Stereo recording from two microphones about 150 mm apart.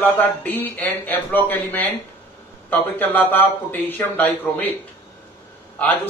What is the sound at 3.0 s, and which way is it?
A man's voice, 10° left (ahead or behind).